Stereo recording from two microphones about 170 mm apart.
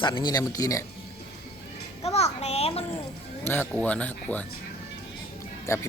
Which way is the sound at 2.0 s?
40° left (ahead or behind).